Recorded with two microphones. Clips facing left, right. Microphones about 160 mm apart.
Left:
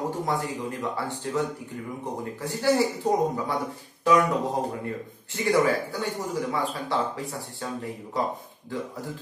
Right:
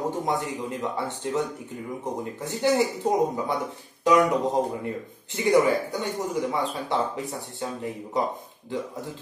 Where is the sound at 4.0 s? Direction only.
20° right (ahead or behind).